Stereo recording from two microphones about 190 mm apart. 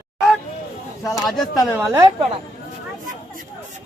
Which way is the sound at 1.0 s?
15° left (ahead or behind).